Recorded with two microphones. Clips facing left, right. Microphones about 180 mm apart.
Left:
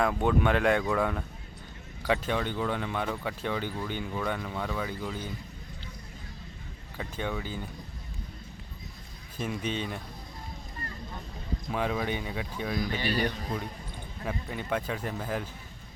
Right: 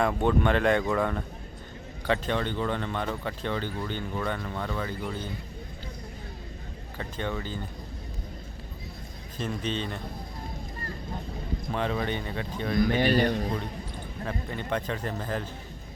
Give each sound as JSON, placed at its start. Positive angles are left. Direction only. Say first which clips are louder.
{"t": 0.0, "sound": "speech", "louder": "right 1 dB", "side_deg": 5}
{"t": 7.0, "sound": "speech", "louder": "right 1 dB", "side_deg": 5}
{"t": 9.4, "sound": "speech", "louder": "right 1 dB", "side_deg": 10}
{"t": 11.7, "sound": "speech", "louder": "right 1 dB", "side_deg": 5}
{"t": 12.9, "sound": "a man's voice", "louder": "right 6 dB", "side_deg": -50}
{"t": 14.3, "sound": "speech", "louder": "even", "side_deg": 5}